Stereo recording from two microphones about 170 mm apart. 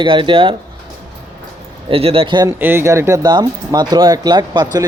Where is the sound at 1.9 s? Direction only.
35° right (ahead or behind).